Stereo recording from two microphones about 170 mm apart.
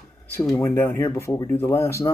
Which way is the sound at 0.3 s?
5° left (ahead or behind).